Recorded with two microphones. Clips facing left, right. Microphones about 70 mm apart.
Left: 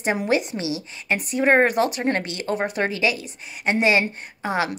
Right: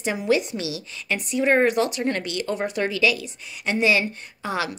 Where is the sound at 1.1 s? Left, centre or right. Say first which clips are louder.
Left 2 dB; left.